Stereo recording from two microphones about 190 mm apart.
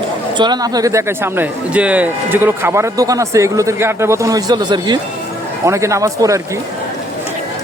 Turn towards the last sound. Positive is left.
turn(degrees=-15)  # may be behind; listen again after turning